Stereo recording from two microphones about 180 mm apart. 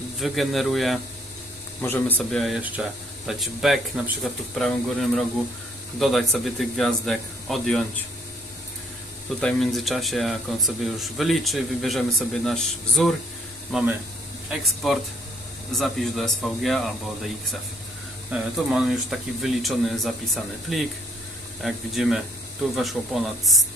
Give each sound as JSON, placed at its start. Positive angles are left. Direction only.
{"t": 0.2, "sound": "speech", "side_deg": 0}
{"t": 1.8, "sound": "speech", "side_deg": 10}
{"t": 9.4, "sound": "speech", "side_deg": 5}